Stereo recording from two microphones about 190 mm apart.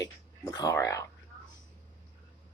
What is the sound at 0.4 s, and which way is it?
Speech, 20° left (ahead or behind).